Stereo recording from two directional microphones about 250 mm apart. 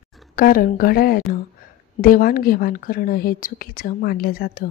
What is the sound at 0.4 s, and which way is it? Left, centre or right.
A woman's voice, left.